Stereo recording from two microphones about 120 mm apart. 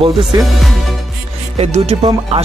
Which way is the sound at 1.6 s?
65° right (ahead or behind).